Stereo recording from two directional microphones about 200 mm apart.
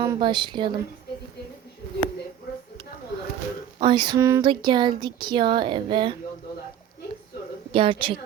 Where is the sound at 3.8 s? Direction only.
20° right (ahead or behind).